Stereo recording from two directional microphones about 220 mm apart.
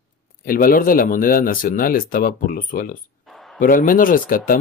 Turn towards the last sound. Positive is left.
turn(degrees=40)  # may be behind; listen again after turning